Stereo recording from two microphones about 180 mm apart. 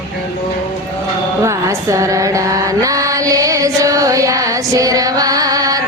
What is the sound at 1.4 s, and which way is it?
Mantra, 15° right (ahead or behind).